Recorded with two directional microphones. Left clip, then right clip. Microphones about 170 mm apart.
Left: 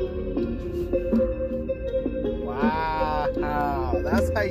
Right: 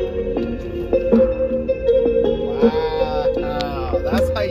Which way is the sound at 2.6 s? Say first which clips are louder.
Right 6 dB; 5° right (ahead or behind).